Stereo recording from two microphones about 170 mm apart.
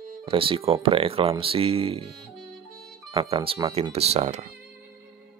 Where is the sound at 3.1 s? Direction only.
35° right (ahead or behind).